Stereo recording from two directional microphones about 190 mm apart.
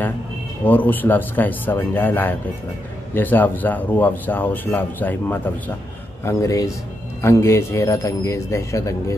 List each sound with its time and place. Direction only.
0.7 s speech: 10° left (ahead or behind)